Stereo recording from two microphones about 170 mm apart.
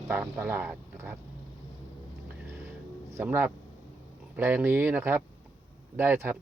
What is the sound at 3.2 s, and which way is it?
Speech, 10° right (ahead or behind).